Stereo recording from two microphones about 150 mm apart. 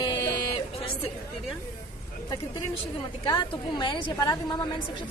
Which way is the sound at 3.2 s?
30° left (ahead or behind).